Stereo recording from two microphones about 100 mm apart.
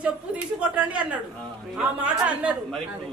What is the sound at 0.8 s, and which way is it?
A woman's voice, 15° right (ahead or behind).